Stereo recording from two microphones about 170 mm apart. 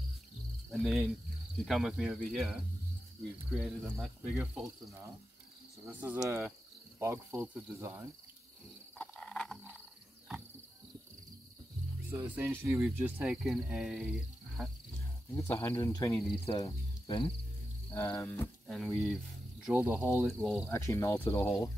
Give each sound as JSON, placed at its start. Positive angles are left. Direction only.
{"t": 0.7, "sound": "cricket", "side_deg": 0}
{"t": 5.9, "sound": "speech", "side_deg": -10}
{"t": 8.9, "sound": "frog", "side_deg": 10}
{"t": 12.1, "sound": "speech", "side_deg": -10}
{"t": 15.3, "sound": "speech", "side_deg": 15}
{"t": 17.9, "sound": "speech", "side_deg": 15}
{"t": 18.7, "sound": "cricket", "side_deg": 5}
{"t": 19.6, "sound": "speech", "side_deg": -5}
{"t": 20.3, "sound": "cricket", "side_deg": 0}
{"t": 20.7, "sound": "speech", "side_deg": 15}